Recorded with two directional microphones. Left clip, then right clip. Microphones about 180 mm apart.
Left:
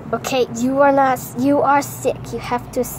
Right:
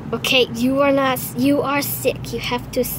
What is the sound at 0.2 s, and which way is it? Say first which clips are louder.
A woman's voice: right 5 dB; 30° right (ahead or behind).